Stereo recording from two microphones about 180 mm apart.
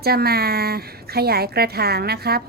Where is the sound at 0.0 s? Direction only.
60° right (ahead or behind).